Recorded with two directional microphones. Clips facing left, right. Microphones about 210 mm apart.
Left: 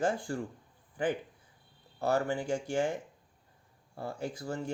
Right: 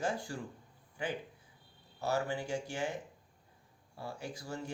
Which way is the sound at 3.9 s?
50° left (ahead or behind).